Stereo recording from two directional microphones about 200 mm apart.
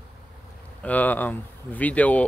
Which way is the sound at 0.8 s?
10° left (ahead or behind).